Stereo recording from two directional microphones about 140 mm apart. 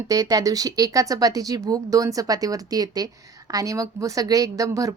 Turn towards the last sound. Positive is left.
turn(degrees=-25)  # may be behind; listen again after turning